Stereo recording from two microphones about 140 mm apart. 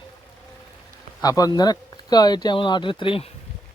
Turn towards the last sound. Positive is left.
turn(degrees=40)  # may be behind; listen again after turning